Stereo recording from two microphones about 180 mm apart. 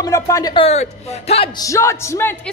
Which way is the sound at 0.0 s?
20° left (ahead or behind).